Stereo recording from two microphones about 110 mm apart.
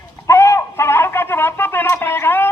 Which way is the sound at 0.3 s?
25° left (ahead or behind).